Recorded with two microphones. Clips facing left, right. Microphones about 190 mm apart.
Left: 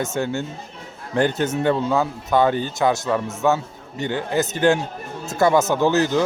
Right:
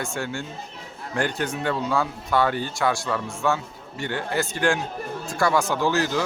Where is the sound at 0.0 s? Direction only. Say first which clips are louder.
Left 6 dB; 20° left (ahead or behind).